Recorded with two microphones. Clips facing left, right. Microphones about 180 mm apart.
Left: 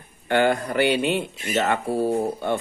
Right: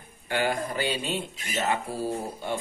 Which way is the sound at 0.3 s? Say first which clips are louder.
Left 7 dB; 65° left (ahead or behind).